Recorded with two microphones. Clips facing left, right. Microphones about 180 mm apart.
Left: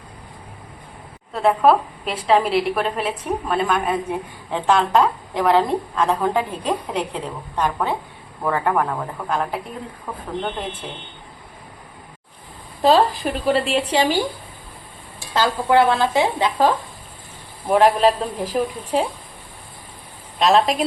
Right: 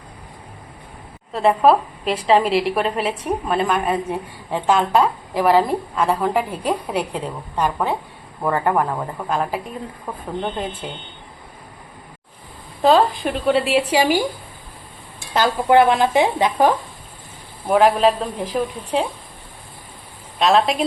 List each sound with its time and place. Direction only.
1.3 s a woman's voice: centre (ahead or behind)
12.8 s a woman's voice: centre (ahead or behind)
15.3 s a woman's voice: 20° right (ahead or behind)
17.7 s a woman's voice: centre (ahead or behind)
20.4 s a woman's voice: centre (ahead or behind)